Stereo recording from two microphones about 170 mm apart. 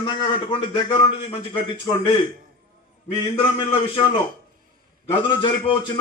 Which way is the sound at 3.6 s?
30° left (ahead or behind).